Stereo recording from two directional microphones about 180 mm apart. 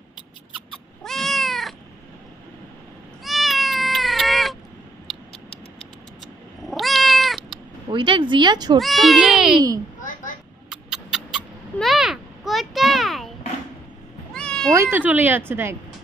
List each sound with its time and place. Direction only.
1.0 s cat: centre (ahead or behind)
3.3 s cat: centre (ahead or behind)
6.6 s cat: centre (ahead or behind)
7.9 s speech: 25° right (ahead or behind)
8.7 s speech: centre (ahead or behind)
10.7 s a sound: centre (ahead or behind)
14.3 s cat: 5° left (ahead or behind)
14.7 s a woman's voice: 15° right (ahead or behind)